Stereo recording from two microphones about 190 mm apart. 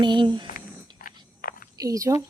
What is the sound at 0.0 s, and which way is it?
Speech, 25° right (ahead or behind).